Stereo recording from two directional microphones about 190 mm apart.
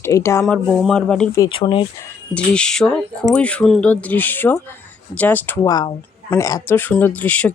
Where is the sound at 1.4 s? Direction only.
25° left (ahead or behind).